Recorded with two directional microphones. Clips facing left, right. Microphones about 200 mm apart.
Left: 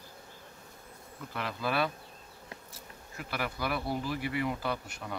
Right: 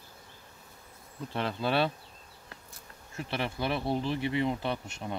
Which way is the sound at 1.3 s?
30° right (ahead or behind).